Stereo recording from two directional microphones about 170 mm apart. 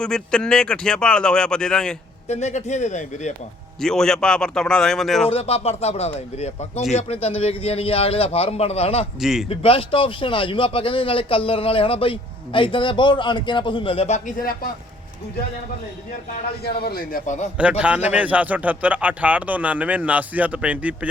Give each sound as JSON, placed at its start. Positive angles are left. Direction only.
{"t": 0.0, "sound": "speech", "side_deg": 5}
{"t": 2.2, "sound": "speech", "side_deg": 40}
{"t": 3.8, "sound": "speech", "side_deg": 5}
{"t": 5.2, "sound": "a man's voice", "side_deg": 35}
{"t": 9.2, "sound": "speech", "side_deg": 0}
{"t": 9.5, "sound": "a man's voice", "side_deg": 30}
{"t": 16.6, "sound": "a man's voice", "side_deg": 65}
{"t": 17.6, "sound": "speech", "side_deg": -5}